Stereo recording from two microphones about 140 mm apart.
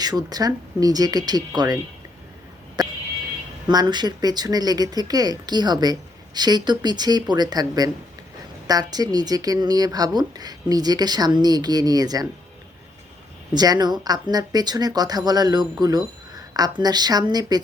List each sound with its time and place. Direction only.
0.0 s speech: 30° right (ahead or behind)
3.7 s speech: 30° right (ahead or behind)
13.5 s speech: 30° right (ahead or behind)